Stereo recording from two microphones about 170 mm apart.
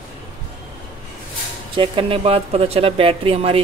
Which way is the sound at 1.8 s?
30° right (ahead or behind).